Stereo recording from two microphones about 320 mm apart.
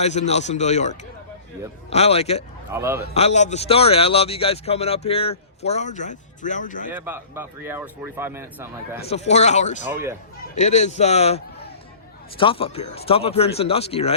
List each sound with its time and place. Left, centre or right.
0.0 s a man's voice: left
2.6 s speech: centre
3.2 s a man's voice: left
6.9 s speech: centre
9.0 s a man's voice: centre
9.9 s speech: centre
10.5 s a man's voice: left